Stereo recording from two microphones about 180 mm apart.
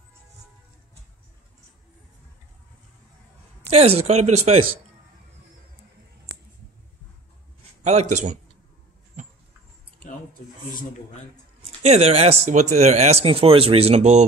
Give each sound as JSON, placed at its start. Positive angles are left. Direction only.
{"t": 3.7, "sound": "speech", "side_deg": -35}
{"t": 7.8, "sound": "speech", "side_deg": -40}
{"t": 11.8, "sound": "speech", "side_deg": -35}